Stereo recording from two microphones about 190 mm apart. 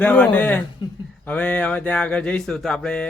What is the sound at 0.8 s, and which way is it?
Speech, 25° left (ahead or behind).